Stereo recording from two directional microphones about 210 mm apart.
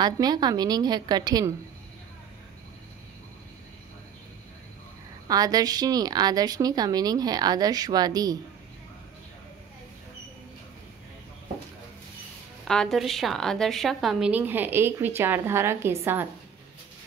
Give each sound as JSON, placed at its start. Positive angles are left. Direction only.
{"t": 0.0, "sound": "a woman's voice", "side_deg": -20}
{"t": 5.3, "sound": "a woman's voice", "side_deg": -15}
{"t": 12.6, "sound": "a woman's voice", "side_deg": 0}